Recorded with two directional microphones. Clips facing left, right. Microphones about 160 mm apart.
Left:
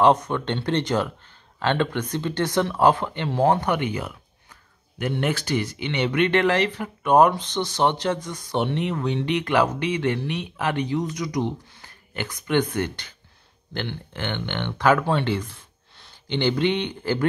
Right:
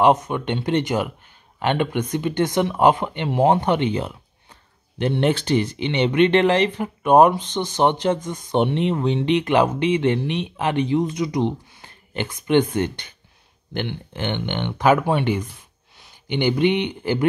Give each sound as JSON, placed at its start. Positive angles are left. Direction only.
{"t": 0.0, "sound": "speech", "side_deg": -15}